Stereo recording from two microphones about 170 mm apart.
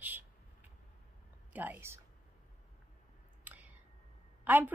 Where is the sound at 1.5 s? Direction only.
10° right (ahead or behind).